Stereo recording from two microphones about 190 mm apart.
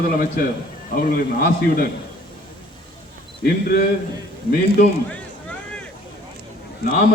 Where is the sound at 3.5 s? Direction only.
55° left (ahead or behind).